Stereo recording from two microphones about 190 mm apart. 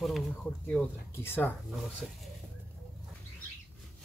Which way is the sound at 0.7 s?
10° left (ahead or behind).